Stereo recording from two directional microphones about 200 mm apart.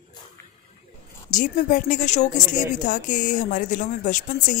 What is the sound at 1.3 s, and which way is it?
Speech, 40° left (ahead or behind).